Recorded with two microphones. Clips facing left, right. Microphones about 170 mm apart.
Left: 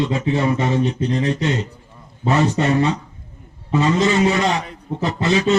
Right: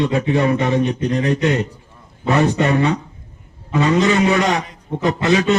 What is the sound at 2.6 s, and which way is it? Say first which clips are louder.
Speech: right 1 dB; 60° right (ahead or behind).